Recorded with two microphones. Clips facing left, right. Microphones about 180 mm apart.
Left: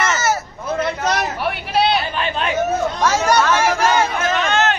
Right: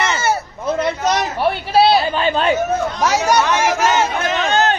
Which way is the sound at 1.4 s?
30° right (ahead or behind).